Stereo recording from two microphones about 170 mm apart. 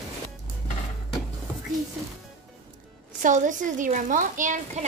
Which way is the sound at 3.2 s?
50° right (ahead or behind).